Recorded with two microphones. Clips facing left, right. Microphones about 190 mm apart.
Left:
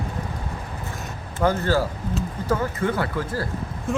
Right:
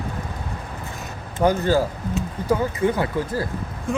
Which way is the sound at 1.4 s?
15° right (ahead or behind).